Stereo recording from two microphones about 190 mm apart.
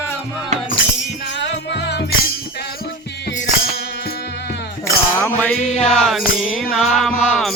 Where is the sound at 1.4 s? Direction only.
65° left (ahead or behind).